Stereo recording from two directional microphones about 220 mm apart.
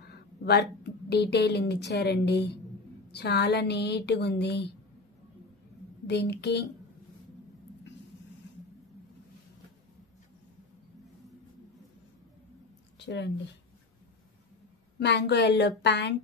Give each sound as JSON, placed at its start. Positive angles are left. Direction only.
{"t": 0.1, "sound": "a woman's voice", "side_deg": 50}
{"t": 6.0, "sound": "speech", "side_deg": 50}
{"t": 13.0, "sound": "speech", "side_deg": 50}
{"t": 15.0, "sound": "speech", "side_deg": 50}